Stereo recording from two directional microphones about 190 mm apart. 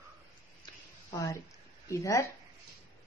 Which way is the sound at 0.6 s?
20° left (ahead or behind).